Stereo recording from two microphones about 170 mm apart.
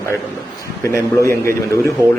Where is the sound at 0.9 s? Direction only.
15° left (ahead or behind).